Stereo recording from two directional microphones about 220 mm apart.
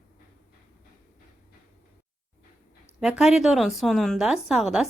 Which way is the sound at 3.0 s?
Centre (ahead or behind).